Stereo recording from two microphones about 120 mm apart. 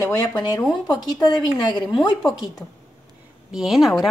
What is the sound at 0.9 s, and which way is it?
Speech, 35° left (ahead or behind).